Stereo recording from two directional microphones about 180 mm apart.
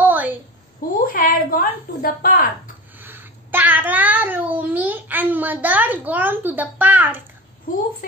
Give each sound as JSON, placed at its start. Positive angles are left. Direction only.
{"t": 0.0, "sound": "a sound", "side_deg": -10}
{"t": 1.0, "sound": "a woman's voice", "side_deg": 50}
{"t": 3.0, "sound": "a child's voice", "side_deg": -10}